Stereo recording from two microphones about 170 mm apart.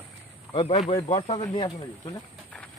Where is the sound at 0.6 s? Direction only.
40° left (ahead or behind).